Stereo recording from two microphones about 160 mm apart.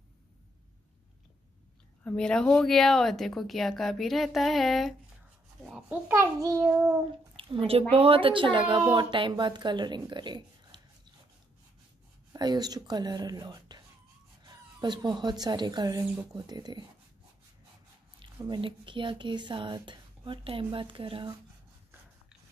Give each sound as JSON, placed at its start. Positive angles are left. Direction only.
{"t": 2.0, "sound": "a child's voice", "side_deg": 5}
{"t": 6.7, "sound": "child singing", "side_deg": -10}
{"t": 7.3, "sound": "a woman's voice", "side_deg": -35}
{"t": 12.3, "sound": "speech", "side_deg": -25}
{"t": 18.4, "sound": "speech", "side_deg": -30}